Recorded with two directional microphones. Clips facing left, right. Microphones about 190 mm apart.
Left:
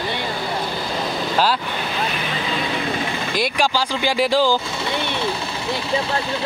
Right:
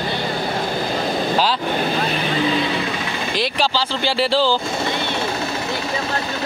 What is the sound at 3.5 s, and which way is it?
A man's voice, 10° left (ahead or behind).